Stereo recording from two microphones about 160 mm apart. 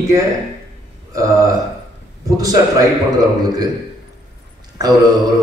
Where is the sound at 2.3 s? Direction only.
25° right (ahead or behind).